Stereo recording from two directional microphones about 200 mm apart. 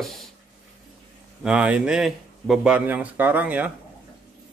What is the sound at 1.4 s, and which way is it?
Speech, 5° right (ahead or behind).